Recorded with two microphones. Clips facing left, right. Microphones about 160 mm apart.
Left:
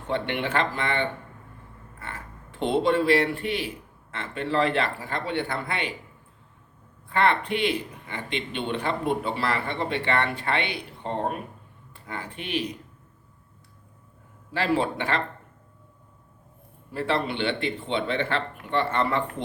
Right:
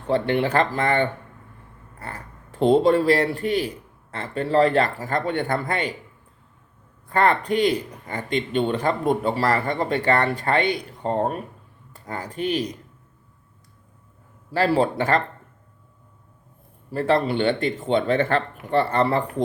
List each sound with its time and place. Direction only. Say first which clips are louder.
0.1 s speech: right 6 dB; 40° right (ahead or behind)
7.1 s speech: right 3 dB; 40° right (ahead or behind)
14.5 s speech: right 5 dB; 40° right (ahead or behind)
16.9 s speech: right 6 dB; 40° right (ahead or behind)